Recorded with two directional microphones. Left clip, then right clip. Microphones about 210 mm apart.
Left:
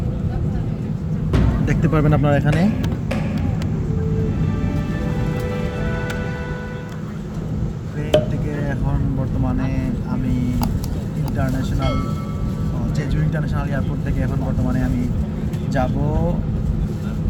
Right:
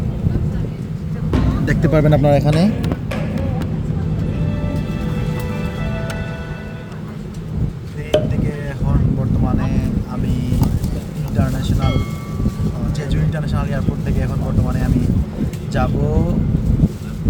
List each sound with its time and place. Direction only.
1.6 s speech: 20° right (ahead or behind)
8.1 s chop: centre (ahead or behind)
9.6 s vehicle: 15° right (ahead or behind)
13.3 s vehicle: 20° right (ahead or behind)